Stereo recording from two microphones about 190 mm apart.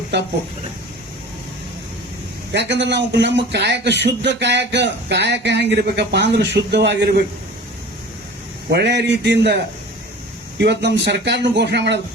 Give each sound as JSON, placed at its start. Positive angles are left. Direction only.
{"t": 0.1, "sound": "speech", "side_deg": -65}
{"t": 2.5, "sound": "speech", "side_deg": -65}
{"t": 8.7, "sound": "speech", "side_deg": -65}
{"t": 10.6, "sound": "speech", "side_deg": -65}